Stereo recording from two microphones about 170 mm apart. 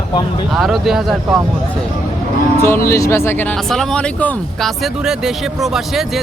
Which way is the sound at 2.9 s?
15° left (ahead or behind).